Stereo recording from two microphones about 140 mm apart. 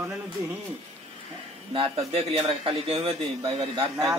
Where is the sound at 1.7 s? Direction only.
45° right (ahead or behind).